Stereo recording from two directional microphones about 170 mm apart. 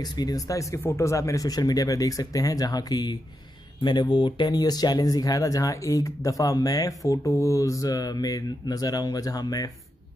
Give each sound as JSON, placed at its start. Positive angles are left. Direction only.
{"t": 0.0, "sound": "speech", "side_deg": 25}